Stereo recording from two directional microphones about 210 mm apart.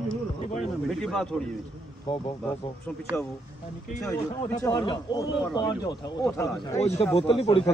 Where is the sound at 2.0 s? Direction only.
25° left (ahead or behind).